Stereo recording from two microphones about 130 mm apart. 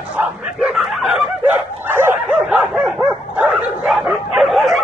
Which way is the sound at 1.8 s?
15° right (ahead or behind).